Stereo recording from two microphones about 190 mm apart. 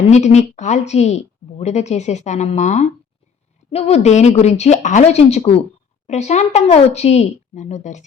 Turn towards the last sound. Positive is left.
turn(degrees=40)  # may be behind; listen again after turning